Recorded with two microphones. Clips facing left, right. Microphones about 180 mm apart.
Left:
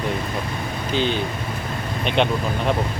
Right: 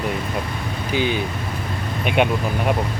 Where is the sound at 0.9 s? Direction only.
10° right (ahead or behind).